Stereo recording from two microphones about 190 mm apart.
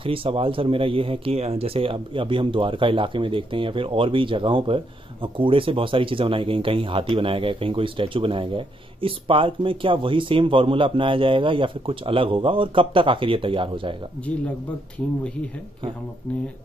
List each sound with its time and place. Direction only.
0.0 s speech: 30° right (ahead or behind)